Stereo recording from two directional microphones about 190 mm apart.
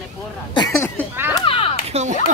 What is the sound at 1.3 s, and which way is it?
Speech, 30° left (ahead or behind).